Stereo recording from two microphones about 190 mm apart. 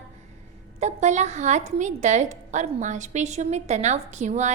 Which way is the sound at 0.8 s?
40° right (ahead or behind).